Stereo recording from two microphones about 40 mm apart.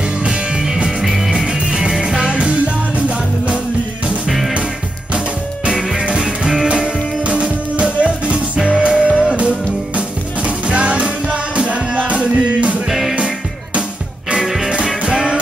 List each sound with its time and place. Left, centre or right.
0.2 s music: centre; by 3.5 s right
6.0 s music: right
14.4 s music: centre